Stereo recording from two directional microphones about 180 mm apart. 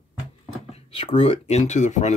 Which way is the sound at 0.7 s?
35° left (ahead or behind).